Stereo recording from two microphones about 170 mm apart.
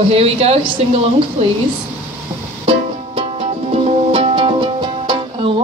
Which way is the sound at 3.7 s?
35° right (ahead or behind).